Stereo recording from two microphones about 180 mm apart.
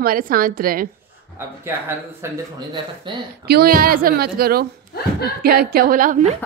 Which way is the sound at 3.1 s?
25° right (ahead or behind).